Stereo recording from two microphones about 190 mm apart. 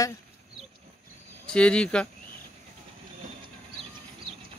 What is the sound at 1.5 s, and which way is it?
Speech, 5° left (ahead or behind).